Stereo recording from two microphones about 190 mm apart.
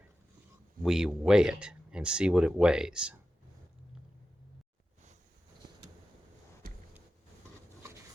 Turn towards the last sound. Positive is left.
turn(degrees=-50)  # may be behind; listen again after turning